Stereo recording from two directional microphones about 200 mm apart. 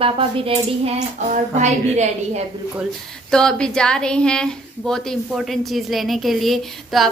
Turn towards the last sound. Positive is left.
turn(degrees=0)  # may be behind; listen again after turning